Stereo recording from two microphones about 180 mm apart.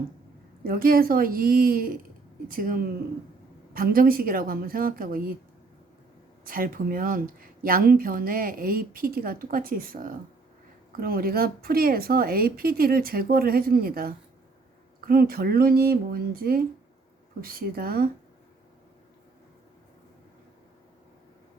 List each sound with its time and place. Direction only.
0.6 s a woman's voice: 55° right (ahead or behind)
6.4 s a woman's voice: 50° right (ahead or behind)